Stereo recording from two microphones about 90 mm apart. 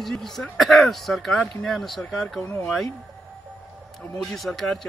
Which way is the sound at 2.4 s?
35° left (ahead or behind).